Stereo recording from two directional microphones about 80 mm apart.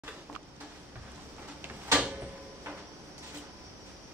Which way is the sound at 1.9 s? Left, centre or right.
Centre.